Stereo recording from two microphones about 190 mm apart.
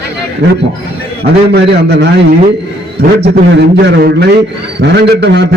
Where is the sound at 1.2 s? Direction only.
60° right (ahead or behind).